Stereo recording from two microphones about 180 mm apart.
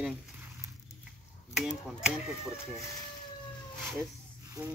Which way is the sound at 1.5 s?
5° right (ahead or behind).